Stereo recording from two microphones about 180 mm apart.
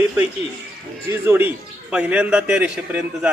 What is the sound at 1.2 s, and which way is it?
A man's voice, 10° right (ahead or behind).